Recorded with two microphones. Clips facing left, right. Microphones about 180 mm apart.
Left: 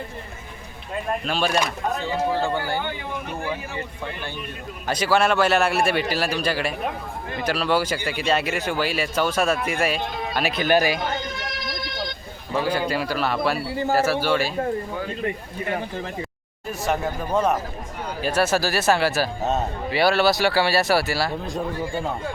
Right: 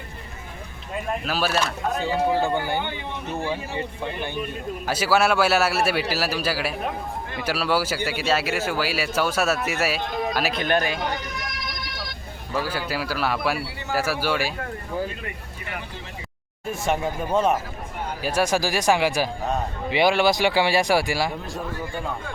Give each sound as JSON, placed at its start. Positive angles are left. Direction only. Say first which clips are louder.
{"t": 1.2, "sound": "speech", "louder": "left 1 dB", "side_deg": -5}
{"t": 2.0, "sound": "a man's voice", "louder": "right 3 dB", "side_deg": -15}
{"t": 4.9, "sound": "speech", "louder": "left 1 dB", "side_deg": -5}
{"t": 11.2, "sound": "vehicle", "louder": "left 2 dB", "side_deg": 30}
{"t": 12.5, "sound": "speech", "louder": "left 4 dB", "side_deg": -5}
{"t": 13.7, "sound": "a man's voice", "louder": "left 10 dB", "side_deg": 40}
{"t": 13.9, "sound": "speech", "louder": "left 3 dB", "side_deg": -10}
{"t": 15.2, "sound": "speech", "louder": "left 9 dB", "side_deg": 30}
{"t": 16.9, "sound": "speech", "louder": "even", "side_deg": -10}
{"t": 19.4, "sound": "speech", "louder": "left 2 dB", "side_deg": 25}
{"t": 19.9, "sound": "speech", "louder": "even", "side_deg": -15}
{"t": 21.4, "sound": "speech", "louder": "left 4 dB", "side_deg": 20}